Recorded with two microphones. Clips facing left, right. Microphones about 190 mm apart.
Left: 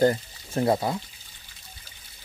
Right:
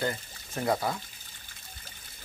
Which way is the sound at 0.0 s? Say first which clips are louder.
Left 11 dB; 40° left (ahead or behind).